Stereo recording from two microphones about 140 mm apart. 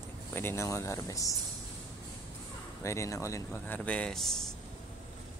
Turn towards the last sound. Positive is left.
turn(degrees=5)  # may be behind; listen again after turning